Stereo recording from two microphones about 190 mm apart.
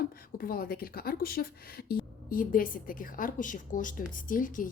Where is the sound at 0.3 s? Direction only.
50° left (ahead or behind).